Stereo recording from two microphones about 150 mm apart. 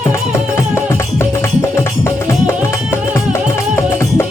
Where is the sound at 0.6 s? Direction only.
15° left (ahead or behind).